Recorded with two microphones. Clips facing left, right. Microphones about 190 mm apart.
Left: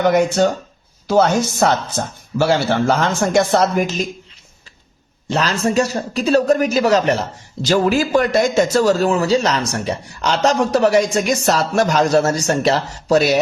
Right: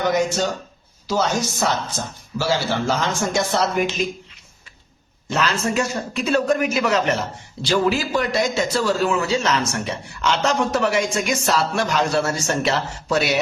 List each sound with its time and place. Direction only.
0.1 s speech: 60° left (ahead or behind); by 4.0 s 40° left (ahead or behind)
5.3 s a man's voice: 35° left (ahead or behind)